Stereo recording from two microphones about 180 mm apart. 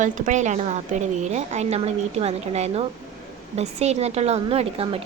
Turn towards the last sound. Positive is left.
turn(degrees=-35)  # may be behind; listen again after turning